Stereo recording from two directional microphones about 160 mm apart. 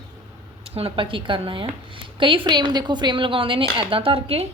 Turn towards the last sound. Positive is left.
turn(degrees=-35)  # may be behind; listen again after turning